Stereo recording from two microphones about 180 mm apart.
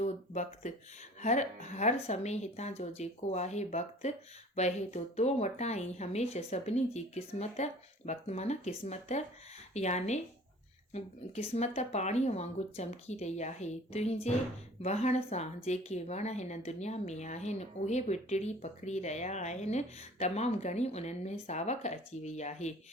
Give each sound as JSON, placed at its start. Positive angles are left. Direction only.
{"t": 0.0, "sound": "speech", "side_deg": 40}